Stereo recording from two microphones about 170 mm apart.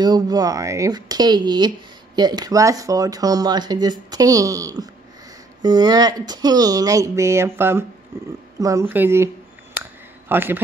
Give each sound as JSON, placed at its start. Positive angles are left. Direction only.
{"t": 0.0, "sound": "a man's voice", "side_deg": -25}